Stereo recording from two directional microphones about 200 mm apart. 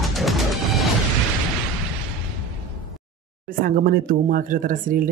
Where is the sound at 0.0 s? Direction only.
Centre (ahead or behind).